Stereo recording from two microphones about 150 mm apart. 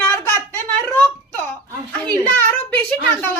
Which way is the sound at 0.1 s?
15° left (ahead or behind).